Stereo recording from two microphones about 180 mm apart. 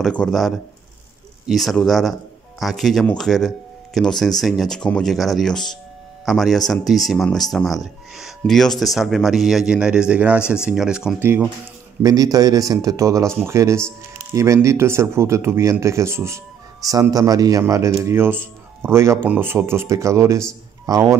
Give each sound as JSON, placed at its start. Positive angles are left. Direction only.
{"t": 0.0, "sound": "a man's voice", "side_deg": 5}